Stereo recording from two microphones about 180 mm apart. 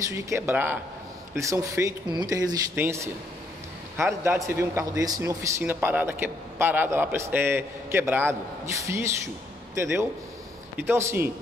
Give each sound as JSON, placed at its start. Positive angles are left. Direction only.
{"t": 0.1, "sound": "a man's voice", "side_deg": -15}